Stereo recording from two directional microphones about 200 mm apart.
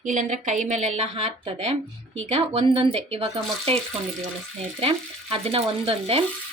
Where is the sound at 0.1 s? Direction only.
40° right (ahead or behind).